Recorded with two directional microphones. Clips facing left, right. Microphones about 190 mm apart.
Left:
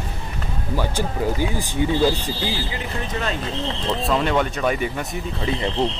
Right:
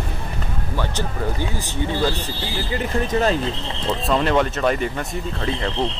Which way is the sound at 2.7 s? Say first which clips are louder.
Right 6 dB; 40° right (ahead or behind).